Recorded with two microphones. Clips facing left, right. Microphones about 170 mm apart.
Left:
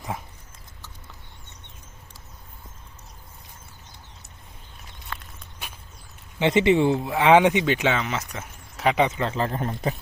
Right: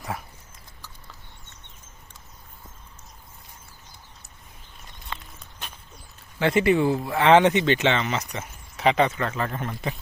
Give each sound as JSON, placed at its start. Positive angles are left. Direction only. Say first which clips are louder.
{"t": 5.0, "sound": "walk", "louder": "even", "side_deg": 0}
{"t": 6.4, "sound": "speech", "louder": "left 1 dB", "side_deg": 20}
{"t": 9.0, "sound": "speech", "louder": "left 1 dB", "side_deg": 20}